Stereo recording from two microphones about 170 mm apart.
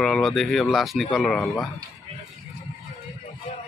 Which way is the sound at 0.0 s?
Centre (ahead or behind).